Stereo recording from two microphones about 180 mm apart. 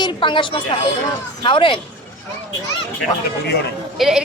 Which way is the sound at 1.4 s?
25° left (ahead or behind).